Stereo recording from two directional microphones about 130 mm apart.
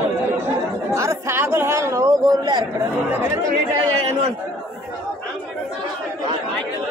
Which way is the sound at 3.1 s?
20° right (ahead or behind).